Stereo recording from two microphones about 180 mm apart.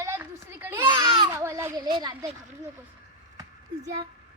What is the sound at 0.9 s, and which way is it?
A child's voice, 25° right (ahead or behind).